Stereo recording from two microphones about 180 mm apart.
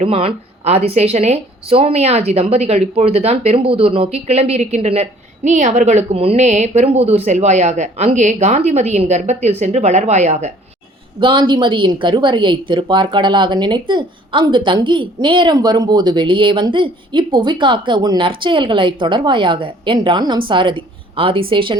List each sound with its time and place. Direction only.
0.0 s speech: 30° right (ahead or behind)
11.2 s a woman's voice: 25° right (ahead or behind)